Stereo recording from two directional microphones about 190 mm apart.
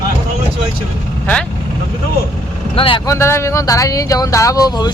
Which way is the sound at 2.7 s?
25° left (ahead or behind).